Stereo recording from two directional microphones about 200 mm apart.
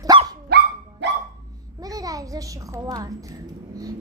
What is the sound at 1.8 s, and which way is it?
A child's voice, 15° right (ahead or behind).